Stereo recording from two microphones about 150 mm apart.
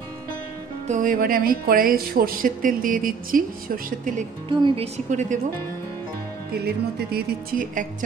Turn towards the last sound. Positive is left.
turn(degrees=-80)